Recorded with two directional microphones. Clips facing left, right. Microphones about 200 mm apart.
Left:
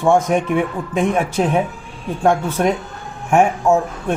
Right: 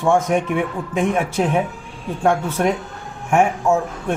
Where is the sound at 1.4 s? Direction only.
30° left (ahead or behind).